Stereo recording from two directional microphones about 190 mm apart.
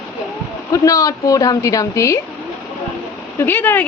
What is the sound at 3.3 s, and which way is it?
Speech, 10° left (ahead or behind).